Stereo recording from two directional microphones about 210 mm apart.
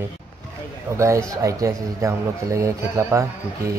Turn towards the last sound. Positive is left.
turn(degrees=-15)  # may be behind; listen again after turning